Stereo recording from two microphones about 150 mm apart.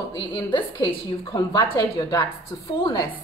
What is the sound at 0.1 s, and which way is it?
A woman's voice, 30° left (ahead or behind).